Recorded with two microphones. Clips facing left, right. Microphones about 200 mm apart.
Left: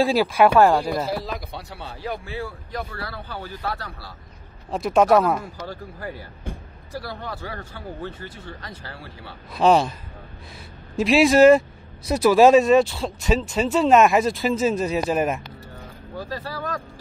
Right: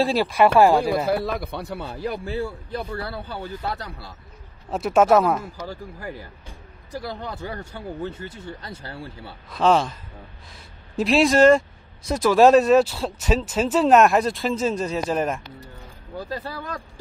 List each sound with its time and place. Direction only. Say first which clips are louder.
0.0 s speech: left 1 dB; centre (ahead or behind)
1.0 s speech: right 5 dB; 60° right (ahead or behind)
2.2 s a man's voice: right 4 dB; 30° right (ahead or behind)
4.6 s speech: even; 5° right (ahead or behind)
6.9 s a man's voice: right 1 dB; 15° right (ahead or behind)
9.5 s speech: left 2 dB; 10° left (ahead or behind)
11.0 s speech: left 2 dB; centre (ahead or behind)
16.2 s a man's voice: right 1 dB; 20° right (ahead or behind)